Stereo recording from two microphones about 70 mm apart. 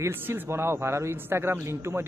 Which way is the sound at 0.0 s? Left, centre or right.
Right.